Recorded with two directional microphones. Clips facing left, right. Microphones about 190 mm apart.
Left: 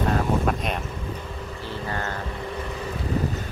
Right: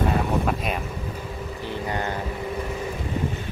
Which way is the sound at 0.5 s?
5° right (ahead or behind).